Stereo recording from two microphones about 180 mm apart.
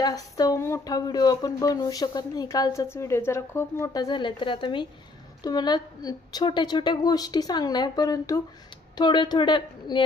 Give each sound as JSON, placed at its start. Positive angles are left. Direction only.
{"t": 0.0, "sound": "speech", "side_deg": 20}